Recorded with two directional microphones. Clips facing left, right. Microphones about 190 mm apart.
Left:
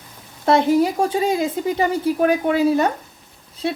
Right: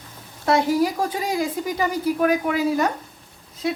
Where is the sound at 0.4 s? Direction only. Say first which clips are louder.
Left 3 dB; 25° left (ahead or behind).